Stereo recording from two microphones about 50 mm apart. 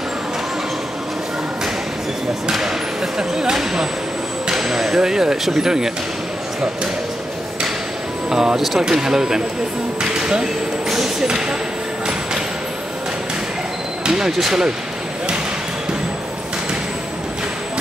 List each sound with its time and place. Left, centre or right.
3.2 s speech: centre
8.3 s speech: centre
14.0 s speech: centre